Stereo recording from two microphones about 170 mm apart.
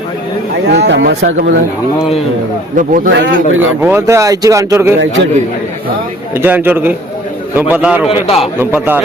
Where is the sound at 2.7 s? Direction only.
50° right (ahead or behind).